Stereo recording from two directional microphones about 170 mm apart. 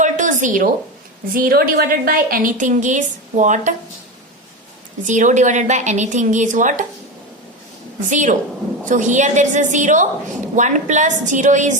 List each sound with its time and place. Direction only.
0.0 s a sound: 50° right (ahead or behind)
1.3 s a woman's voice: 60° right (ahead or behind)
5.0 s a woman's voice: 45° right (ahead or behind)
8.1 s a woman's voice: 45° right (ahead or behind)